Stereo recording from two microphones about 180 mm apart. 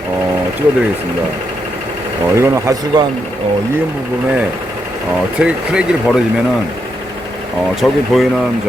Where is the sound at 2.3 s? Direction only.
15° right (ahead or behind).